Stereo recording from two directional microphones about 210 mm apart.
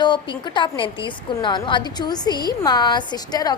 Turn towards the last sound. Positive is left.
turn(degrees=20)  # may be behind; listen again after turning